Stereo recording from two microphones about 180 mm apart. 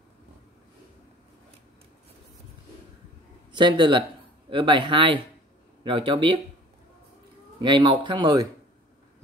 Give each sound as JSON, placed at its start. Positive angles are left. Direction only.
{"t": 3.5, "sound": "speech", "side_deg": -25}
{"t": 7.6, "sound": "speech", "side_deg": -25}